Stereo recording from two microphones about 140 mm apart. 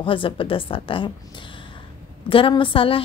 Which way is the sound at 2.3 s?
40° left (ahead or behind).